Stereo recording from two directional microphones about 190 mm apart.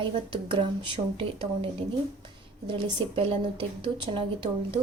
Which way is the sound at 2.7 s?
25° right (ahead or behind).